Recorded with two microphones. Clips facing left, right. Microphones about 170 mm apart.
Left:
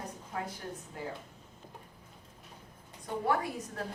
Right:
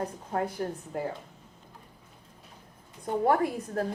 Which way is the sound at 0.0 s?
60° right (ahead or behind).